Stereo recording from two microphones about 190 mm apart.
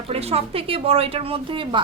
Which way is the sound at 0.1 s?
30° right (ahead or behind).